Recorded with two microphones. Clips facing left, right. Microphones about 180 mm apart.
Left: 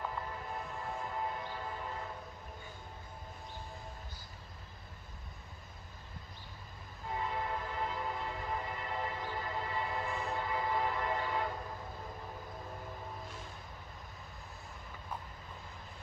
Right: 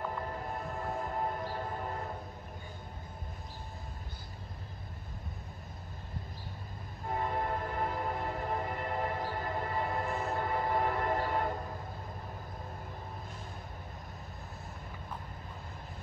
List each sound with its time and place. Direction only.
0.2 s music: 45° right (ahead or behind)
1.0 s a sound: 45° right (ahead or behind)
7.1 s train: 50° right (ahead or behind)